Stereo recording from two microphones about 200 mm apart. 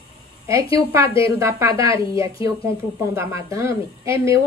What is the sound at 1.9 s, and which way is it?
Speech, 25° left (ahead or behind).